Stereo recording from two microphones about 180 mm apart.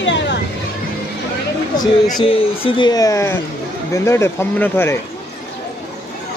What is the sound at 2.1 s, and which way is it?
Speech, 30° left (ahead or behind).